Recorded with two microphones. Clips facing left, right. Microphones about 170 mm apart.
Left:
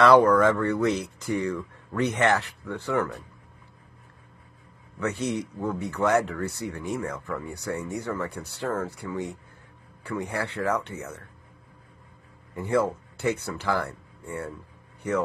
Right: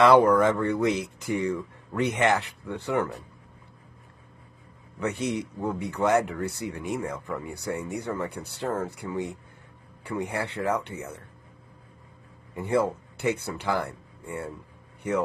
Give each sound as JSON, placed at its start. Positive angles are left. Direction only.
{"t": 0.0, "sound": "speech", "side_deg": -20}
{"t": 5.0, "sound": "speech", "side_deg": -20}
{"t": 12.5, "sound": "speech", "side_deg": -20}